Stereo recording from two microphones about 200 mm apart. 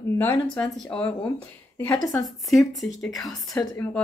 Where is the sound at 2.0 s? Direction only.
20° left (ahead or behind).